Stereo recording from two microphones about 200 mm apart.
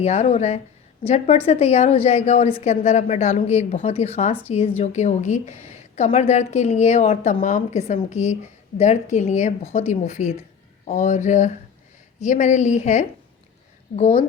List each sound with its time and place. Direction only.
0.0 s a woman's voice: 35° left (ahead or behind)